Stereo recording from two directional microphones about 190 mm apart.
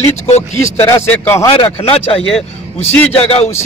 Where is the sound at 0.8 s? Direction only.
10° left (ahead or behind).